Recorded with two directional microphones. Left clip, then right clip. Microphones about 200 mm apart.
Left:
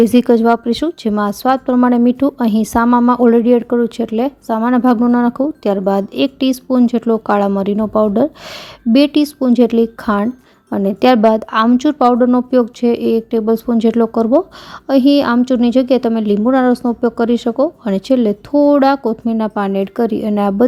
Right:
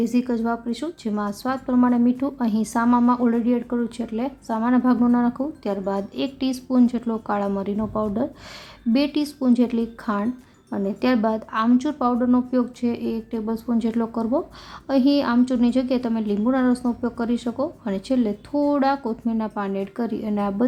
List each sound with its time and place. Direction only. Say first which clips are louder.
0.0 s speech: left 13 dB; 40° left (ahead or behind)